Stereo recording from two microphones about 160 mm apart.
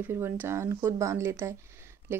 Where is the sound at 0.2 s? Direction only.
15° right (ahead or behind).